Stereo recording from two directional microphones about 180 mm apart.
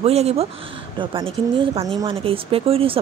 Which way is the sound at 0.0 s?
35° right (ahead or behind).